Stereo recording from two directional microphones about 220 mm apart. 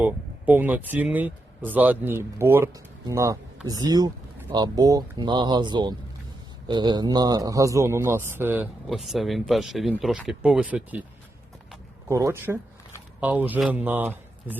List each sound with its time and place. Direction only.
0.0 s a man's voice: 10° right (ahead or behind)
12.0 s a man's voice: 15° right (ahead or behind)